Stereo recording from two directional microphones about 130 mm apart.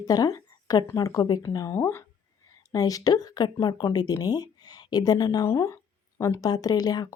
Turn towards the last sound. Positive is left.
turn(degrees=30)  # may be behind; listen again after turning